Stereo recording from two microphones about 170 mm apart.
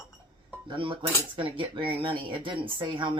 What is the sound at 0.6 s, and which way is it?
Cutlery, 30° right (ahead or behind).